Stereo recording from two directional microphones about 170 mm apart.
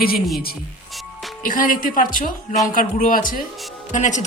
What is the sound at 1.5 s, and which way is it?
Speech, 55° left (ahead or behind).